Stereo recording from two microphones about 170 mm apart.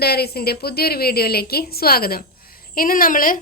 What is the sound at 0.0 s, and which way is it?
A woman's voice, 70° left (ahead or behind).